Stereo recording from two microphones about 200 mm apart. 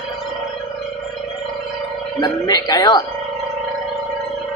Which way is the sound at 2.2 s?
20° left (ahead or behind).